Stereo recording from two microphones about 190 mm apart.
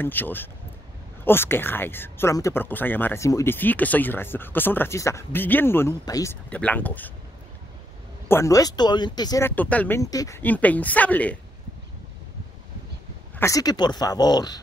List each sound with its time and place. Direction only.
0.0 s speech: 10° left (ahead or behind)
8.3 s speech: 15° left (ahead or behind)
9.6 s speech: 10° left (ahead or behind)
13.4 s speech: 20° left (ahead or behind)